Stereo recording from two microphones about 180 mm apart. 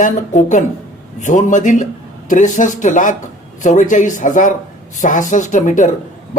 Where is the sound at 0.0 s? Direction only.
45° left (ahead or behind).